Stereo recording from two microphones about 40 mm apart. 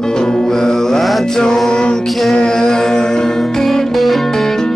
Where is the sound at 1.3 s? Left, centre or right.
Centre.